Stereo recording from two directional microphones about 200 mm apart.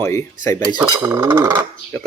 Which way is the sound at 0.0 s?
15° left (ahead or behind).